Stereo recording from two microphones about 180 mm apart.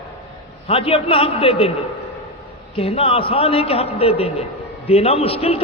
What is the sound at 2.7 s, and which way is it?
A man's voice, 35° left (ahead or behind).